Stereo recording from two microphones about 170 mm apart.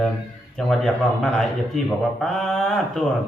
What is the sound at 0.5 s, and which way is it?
A man's voice, centre (ahead or behind).